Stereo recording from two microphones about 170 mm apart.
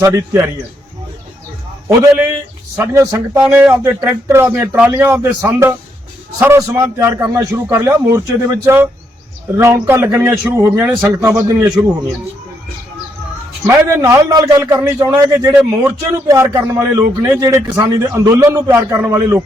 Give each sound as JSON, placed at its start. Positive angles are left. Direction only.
{"t": 0.0, "sound": "a man's voice", "side_deg": -15}
{"t": 2.7, "sound": "a man's voice", "side_deg": -15}
{"t": 13.7, "sound": "a man's voice", "side_deg": -15}
{"t": 17.4, "sound": "a man's voice", "side_deg": -20}